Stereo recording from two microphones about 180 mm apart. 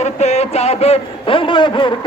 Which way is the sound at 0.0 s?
40° left (ahead or behind).